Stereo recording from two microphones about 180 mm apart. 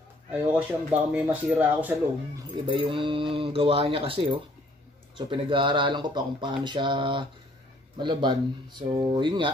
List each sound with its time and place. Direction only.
0.3 s speech: 5° right (ahead or behind)
2.6 s speech: 30° right (ahead or behind)